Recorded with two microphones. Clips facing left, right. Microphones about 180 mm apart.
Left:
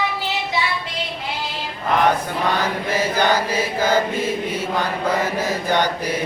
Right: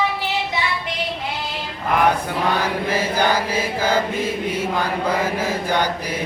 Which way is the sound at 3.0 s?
10° right (ahead or behind).